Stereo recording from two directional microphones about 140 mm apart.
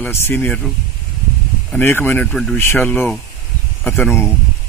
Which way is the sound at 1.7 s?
15° left (ahead or behind).